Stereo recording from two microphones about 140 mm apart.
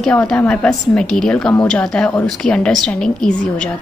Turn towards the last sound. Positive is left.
turn(degrees=10)  # may be behind; listen again after turning